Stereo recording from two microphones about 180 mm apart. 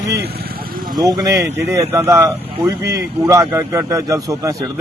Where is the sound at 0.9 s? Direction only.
25° right (ahead or behind).